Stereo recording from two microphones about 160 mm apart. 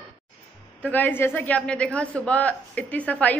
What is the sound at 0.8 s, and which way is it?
A woman's voice, 10° left (ahead or behind).